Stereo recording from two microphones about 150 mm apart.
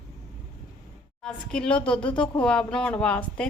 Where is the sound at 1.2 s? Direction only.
5° left (ahead or behind).